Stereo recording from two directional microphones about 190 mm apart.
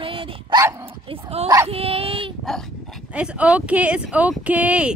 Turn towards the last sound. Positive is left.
turn(degrees=-5)  # may be behind; listen again after turning